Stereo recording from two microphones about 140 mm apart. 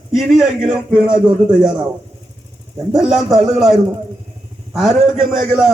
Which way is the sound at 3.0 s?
Centre (ahead or behind).